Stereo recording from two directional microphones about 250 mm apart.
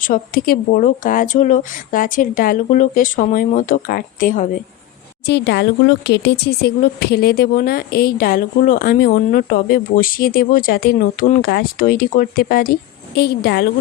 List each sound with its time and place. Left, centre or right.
0.0 s speech: left
5.2 s speech: left